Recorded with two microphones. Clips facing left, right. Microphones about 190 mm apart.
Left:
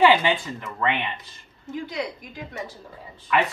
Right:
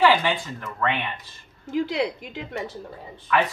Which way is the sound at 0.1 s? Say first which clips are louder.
Left 2 dB; 15° left (ahead or behind).